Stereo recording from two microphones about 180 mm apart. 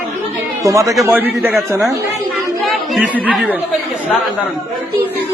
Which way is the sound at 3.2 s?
5° right (ahead or behind).